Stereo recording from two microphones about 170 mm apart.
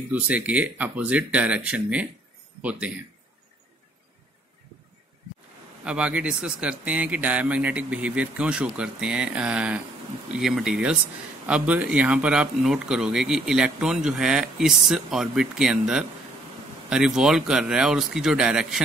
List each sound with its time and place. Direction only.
0.1 s speech: 10° right (ahead or behind)
5.9 s speech: 5° right (ahead or behind)